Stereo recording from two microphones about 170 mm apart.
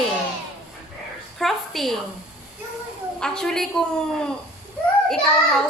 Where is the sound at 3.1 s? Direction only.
5° left (ahead or behind).